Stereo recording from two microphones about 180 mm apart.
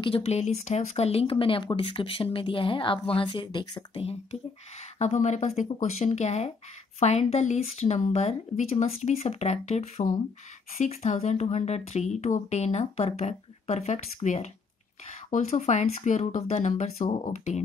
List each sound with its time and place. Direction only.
0.0 s speech: 30° left (ahead or behind)